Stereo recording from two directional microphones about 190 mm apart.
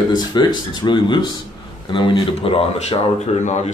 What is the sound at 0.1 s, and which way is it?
Speech, 20° left (ahead or behind).